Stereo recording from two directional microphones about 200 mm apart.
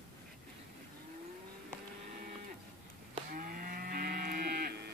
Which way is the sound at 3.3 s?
45° right (ahead or behind).